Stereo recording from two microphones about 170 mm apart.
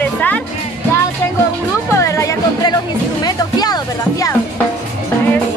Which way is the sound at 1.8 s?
15° left (ahead or behind).